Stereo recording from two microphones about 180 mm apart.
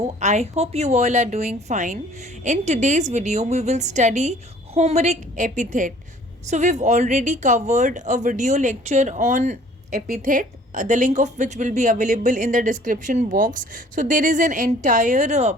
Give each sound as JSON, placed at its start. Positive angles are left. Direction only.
{"t": 0.2, "sound": "a woman's voice", "side_deg": -40}